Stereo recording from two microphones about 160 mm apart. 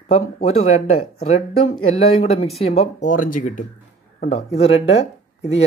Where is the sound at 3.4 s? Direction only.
55° left (ahead or behind).